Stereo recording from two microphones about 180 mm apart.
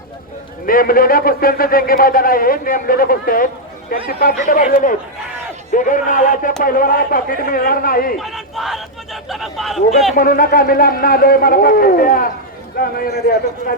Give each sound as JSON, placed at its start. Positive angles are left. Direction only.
{"t": 0.6, "sound": "speech", "side_deg": 50}
{"t": 8.2, "sound": "a man's voice", "side_deg": 0}
{"t": 10.2, "sound": "a man's voice", "side_deg": 55}